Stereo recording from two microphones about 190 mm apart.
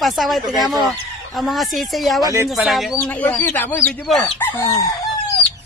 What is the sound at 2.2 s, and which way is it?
Speech, 15° right (ahead or behind).